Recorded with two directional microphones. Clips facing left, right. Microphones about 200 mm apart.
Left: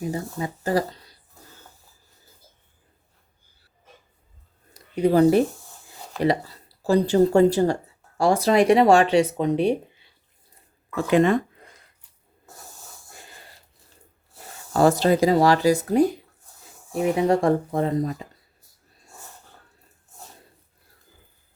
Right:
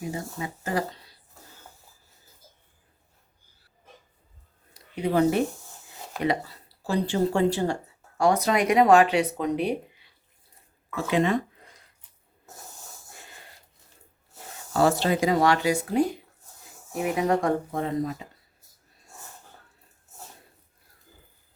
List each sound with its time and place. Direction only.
0.1 s speech: 35° left (ahead or behind)
4.7 s a sound: 40° left (ahead or behind)
6.8 s speech: 40° left (ahead or behind)
10.9 s speech: 50° left (ahead or behind)
14.7 s speech: 40° left (ahead or behind)